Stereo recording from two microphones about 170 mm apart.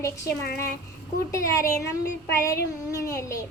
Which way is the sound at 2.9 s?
20° left (ahead or behind).